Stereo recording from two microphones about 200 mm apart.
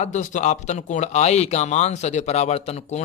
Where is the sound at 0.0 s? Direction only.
35° left (ahead or behind).